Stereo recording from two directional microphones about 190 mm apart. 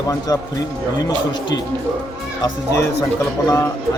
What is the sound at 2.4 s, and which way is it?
Speech, 15° left (ahead or behind).